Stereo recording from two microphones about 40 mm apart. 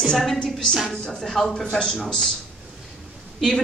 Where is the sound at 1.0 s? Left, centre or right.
Centre.